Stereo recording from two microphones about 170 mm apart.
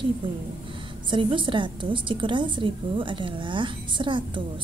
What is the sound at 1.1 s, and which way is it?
A woman's voice, 30° right (ahead or behind).